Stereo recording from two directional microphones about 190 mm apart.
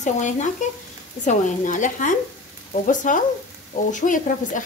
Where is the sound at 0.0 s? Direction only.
40° left (ahead or behind).